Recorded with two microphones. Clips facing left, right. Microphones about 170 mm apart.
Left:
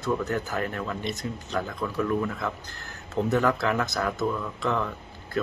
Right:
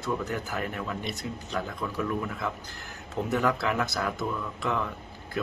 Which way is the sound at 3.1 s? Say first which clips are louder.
Left 3 dB; 10° right (ahead or behind).